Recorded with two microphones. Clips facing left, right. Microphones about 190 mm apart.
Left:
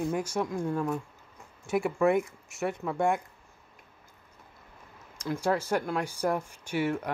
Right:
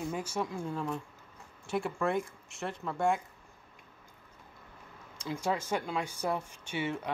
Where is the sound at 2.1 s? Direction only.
70° left (ahead or behind).